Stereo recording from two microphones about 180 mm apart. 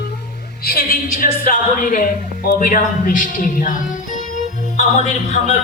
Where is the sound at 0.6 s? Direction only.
55° left (ahead or behind).